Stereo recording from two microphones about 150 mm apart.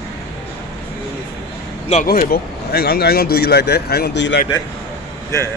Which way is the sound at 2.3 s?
90° left.